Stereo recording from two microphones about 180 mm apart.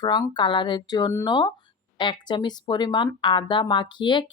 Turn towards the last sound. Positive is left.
turn(degrees=25)  # may be behind; listen again after turning